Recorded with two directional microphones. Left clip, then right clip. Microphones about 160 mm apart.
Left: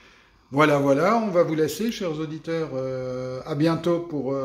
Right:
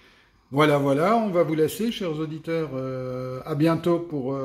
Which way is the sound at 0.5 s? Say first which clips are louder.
Left 1 dB; 20° right (ahead or behind).